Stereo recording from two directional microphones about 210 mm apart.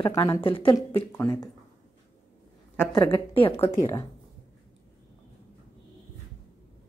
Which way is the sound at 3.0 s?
20° left (ahead or behind).